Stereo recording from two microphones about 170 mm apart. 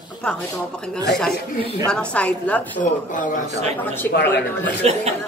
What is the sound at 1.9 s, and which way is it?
Speech, 5° left (ahead or behind).